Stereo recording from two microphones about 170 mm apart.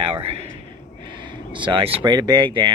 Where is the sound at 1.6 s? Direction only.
30° right (ahead or behind).